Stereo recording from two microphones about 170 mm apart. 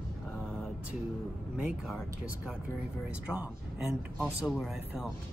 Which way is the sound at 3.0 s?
5° right (ahead or behind).